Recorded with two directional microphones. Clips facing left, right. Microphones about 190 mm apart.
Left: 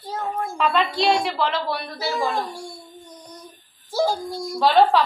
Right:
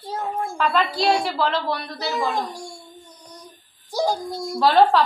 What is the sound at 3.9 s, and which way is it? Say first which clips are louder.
Dog: left 1 dB; 15° right (ahead or behind).